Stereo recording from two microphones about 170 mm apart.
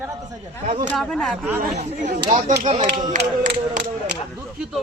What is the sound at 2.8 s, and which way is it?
Speech, 65° right (ahead or behind).